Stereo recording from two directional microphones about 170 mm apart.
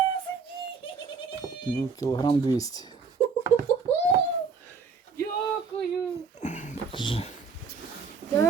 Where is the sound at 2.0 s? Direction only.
20° left (ahead or behind).